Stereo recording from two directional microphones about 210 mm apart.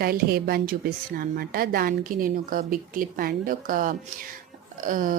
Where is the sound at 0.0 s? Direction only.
45° right (ahead or behind).